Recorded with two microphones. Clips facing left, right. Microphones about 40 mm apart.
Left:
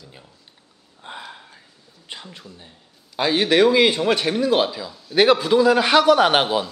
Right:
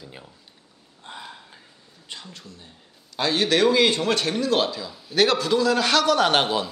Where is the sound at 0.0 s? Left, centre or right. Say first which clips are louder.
Right 3 dB; centre.